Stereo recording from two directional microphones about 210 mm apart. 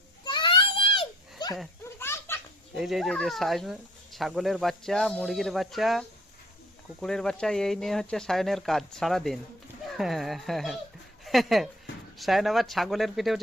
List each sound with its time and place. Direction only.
0.3 s baby cry: 20° left (ahead or behind)
2.0 s a sound: 10° left (ahead or behind)
2.7 s speech: centre (ahead or behind)